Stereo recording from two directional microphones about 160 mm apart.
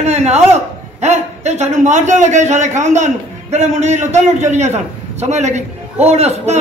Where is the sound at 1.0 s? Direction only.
45° right (ahead or behind).